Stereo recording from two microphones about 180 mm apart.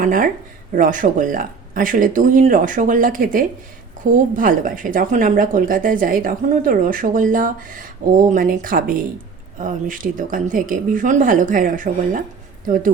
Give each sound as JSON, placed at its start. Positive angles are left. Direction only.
{"t": 0.0, "sound": "speech", "side_deg": -50}